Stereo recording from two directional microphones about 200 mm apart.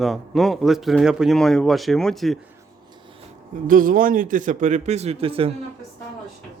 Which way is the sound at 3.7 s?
45° right (ahead or behind).